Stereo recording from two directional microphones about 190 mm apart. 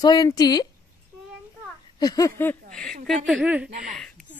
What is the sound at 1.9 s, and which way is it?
A woman's voice, 20° left (ahead or behind).